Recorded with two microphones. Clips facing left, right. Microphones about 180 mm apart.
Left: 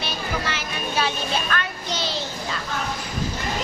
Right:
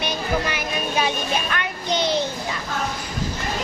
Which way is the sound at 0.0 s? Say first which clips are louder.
Right 4 dB; 15° right (ahead or behind).